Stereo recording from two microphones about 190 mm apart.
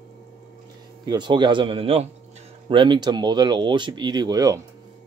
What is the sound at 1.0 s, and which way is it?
Speech, 20° right (ahead or behind).